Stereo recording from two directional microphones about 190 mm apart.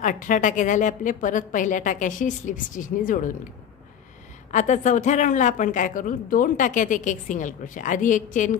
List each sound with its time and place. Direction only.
0.0 s a woman's voice: 45° left (ahead or behind)
4.5 s a woman's voice: 40° left (ahead or behind)